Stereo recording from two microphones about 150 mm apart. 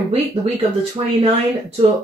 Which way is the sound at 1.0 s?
40° right (ahead or behind).